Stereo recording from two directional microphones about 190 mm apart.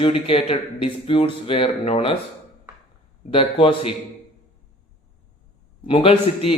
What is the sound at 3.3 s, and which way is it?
Speech, 25° left (ahead or behind).